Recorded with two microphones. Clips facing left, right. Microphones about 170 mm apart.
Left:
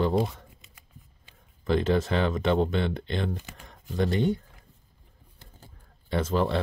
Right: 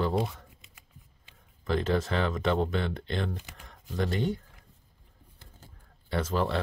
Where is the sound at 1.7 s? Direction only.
20° left (ahead or behind).